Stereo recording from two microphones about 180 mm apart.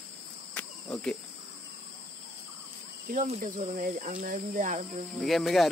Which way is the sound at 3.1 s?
40° right (ahead or behind).